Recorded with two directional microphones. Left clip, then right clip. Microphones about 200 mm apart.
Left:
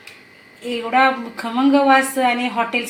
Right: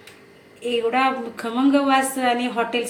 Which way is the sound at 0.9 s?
5° left (ahead or behind).